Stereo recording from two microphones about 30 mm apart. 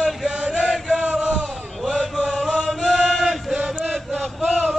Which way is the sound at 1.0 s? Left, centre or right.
Right.